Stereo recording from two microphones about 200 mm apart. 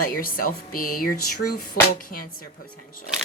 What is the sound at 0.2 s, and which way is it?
Speech, 45° left (ahead or behind).